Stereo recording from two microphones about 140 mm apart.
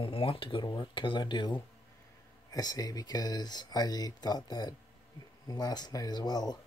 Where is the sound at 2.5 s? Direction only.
25° left (ahead or behind).